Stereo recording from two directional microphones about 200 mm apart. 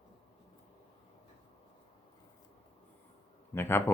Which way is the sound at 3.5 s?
10° left (ahead or behind).